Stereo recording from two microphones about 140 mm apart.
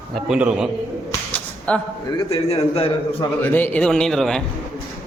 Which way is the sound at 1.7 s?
10° left (ahead or behind).